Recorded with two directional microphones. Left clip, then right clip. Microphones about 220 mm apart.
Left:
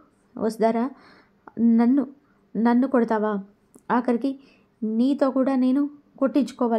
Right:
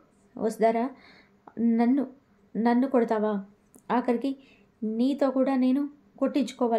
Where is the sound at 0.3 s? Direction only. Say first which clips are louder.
Left 2 dB; 20° left (ahead or behind).